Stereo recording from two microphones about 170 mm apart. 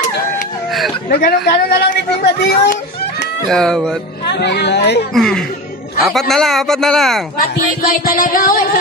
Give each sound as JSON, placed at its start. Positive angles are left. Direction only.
{"t": 1.1, "sound": "speech", "side_deg": 70}
{"t": 3.4, "sound": "speech", "side_deg": 5}
{"t": 4.3, "sound": "speech", "side_deg": 80}
{"t": 5.1, "sound": "speech", "side_deg": 5}
{"t": 7.3, "sound": "speech", "side_deg": 55}